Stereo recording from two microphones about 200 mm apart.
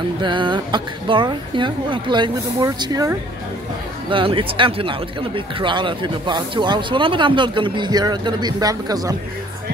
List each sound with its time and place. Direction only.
0.2 s speech: 25° right (ahead or behind)